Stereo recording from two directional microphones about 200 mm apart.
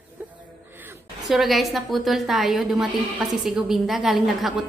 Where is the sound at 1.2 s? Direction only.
Centre (ahead or behind).